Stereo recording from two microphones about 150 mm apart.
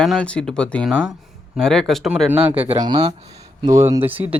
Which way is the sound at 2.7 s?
30° right (ahead or behind).